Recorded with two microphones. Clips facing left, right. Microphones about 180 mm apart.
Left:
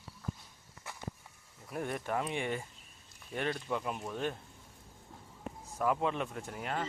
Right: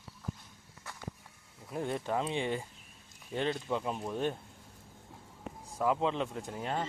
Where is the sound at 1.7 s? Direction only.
20° right (ahead or behind).